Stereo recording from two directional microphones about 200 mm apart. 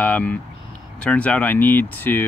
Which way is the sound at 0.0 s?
10° left (ahead or behind).